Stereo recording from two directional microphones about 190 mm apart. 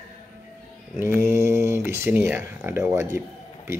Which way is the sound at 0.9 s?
15° right (ahead or behind).